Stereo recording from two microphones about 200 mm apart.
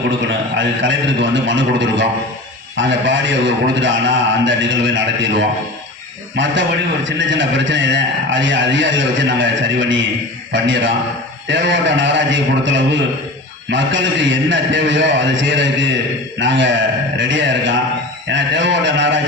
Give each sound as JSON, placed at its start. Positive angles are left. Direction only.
{"t": 0.5, "sound": "a man's voice", "side_deg": -65}
{"t": 6.3, "sound": "a man's voice", "side_deg": -65}